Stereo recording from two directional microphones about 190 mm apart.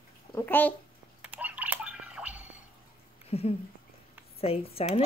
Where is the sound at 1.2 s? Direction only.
5° right (ahead or behind).